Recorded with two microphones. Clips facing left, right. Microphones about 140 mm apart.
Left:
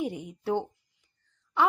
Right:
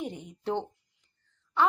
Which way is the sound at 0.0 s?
10° left (ahead or behind).